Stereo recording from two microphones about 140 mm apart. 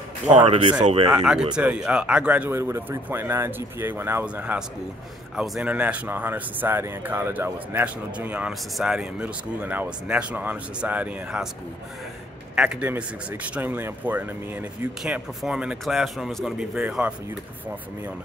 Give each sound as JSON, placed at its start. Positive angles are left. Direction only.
{"t": 0.5, "sound": "speech", "side_deg": -35}
{"t": 1.1, "sound": "speech", "side_deg": -5}
{"t": 12.5, "sound": "speech", "side_deg": -10}